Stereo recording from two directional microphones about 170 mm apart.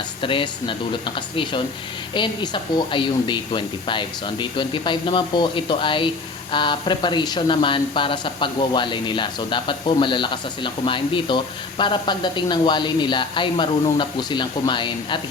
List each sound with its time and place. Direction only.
0.2 s speech: 30° left (ahead or behind)